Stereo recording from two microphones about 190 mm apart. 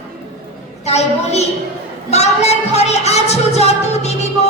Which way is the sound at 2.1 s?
35° left (ahead or behind).